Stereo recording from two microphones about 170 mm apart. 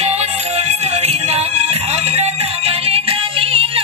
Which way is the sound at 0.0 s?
40° right (ahead or behind).